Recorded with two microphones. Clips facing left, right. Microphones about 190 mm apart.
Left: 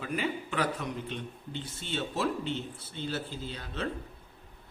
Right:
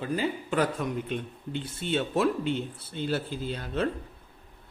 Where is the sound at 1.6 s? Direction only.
55° right (ahead or behind).